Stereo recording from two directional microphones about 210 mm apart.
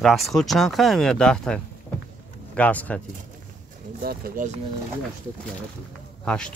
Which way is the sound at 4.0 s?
40° right (ahead or behind).